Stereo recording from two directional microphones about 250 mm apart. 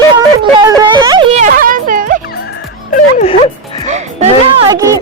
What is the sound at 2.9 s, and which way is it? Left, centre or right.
Speech, left.